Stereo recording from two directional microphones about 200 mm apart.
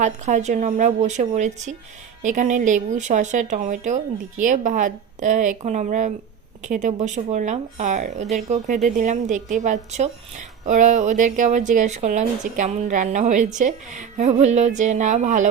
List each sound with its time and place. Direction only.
0.0 s speech: 35° right (ahead or behind)